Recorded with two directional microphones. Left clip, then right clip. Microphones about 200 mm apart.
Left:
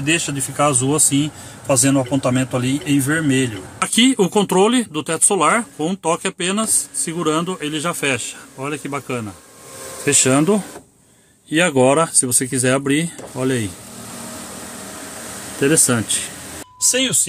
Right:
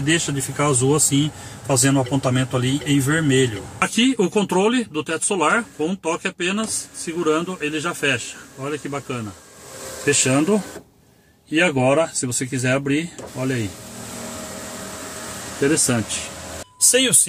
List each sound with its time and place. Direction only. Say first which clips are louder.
0.0 s speech: left 1 dB; 15° left (ahead or behind)
3.8 s speech: left 3 dB; 35° left (ahead or behind)
11.5 s speech: left 3 dB; 40° left (ahead or behind)
15.6 s speech: left 3 dB; 35° left (ahead or behind)